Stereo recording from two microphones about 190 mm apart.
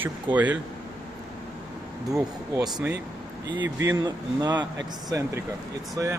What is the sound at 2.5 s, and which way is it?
Speech, 20° right (ahead or behind).